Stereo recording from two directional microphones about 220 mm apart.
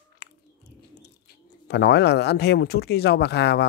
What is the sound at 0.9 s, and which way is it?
Speech, 50° left (ahead or behind).